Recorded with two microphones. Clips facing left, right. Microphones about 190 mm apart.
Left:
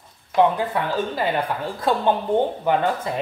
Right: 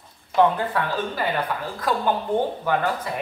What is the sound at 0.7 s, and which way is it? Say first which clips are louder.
Speech: left 2 dB; 25° left (ahead or behind).